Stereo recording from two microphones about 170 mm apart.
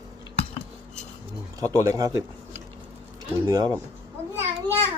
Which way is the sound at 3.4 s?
20° right (ahead or behind).